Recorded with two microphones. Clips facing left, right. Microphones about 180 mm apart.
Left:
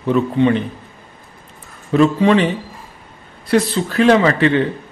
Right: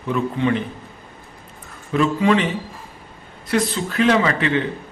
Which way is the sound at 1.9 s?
35° left (ahead or behind).